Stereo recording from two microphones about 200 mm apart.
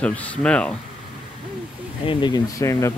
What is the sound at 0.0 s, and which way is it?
Speech, 5° left (ahead or behind).